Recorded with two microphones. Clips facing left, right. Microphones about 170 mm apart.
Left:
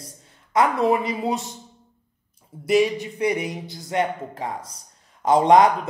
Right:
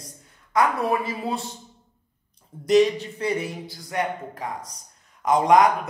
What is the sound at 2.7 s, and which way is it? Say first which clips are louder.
A woman's voice: right 1 dB; 10° left (ahead or behind).